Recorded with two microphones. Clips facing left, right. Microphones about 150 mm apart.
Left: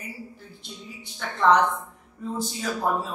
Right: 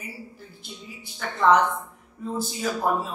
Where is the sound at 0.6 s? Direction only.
5° right (ahead or behind).